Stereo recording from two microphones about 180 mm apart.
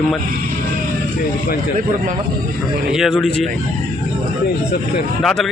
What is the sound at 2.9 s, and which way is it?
Speech, centre (ahead or behind).